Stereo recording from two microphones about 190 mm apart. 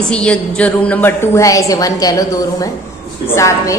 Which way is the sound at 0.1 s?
5° left (ahead or behind).